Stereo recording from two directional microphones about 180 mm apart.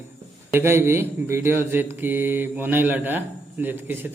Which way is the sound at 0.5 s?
15° right (ahead or behind).